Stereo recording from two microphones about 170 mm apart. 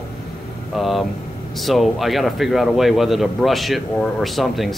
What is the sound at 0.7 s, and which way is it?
Speech, centre (ahead or behind).